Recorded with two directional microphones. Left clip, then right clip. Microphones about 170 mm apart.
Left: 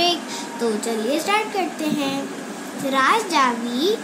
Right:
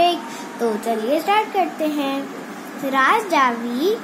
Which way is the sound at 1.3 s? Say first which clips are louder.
Right 3 dB; 35° right (ahead or behind).